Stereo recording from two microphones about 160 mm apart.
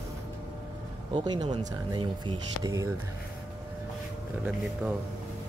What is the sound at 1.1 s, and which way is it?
Speech, 30° right (ahead or behind).